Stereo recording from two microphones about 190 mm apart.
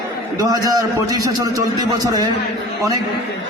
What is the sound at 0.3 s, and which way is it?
A man's voice, 20° right (ahead or behind).